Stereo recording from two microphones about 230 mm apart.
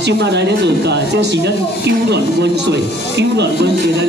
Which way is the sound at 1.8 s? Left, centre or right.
Right.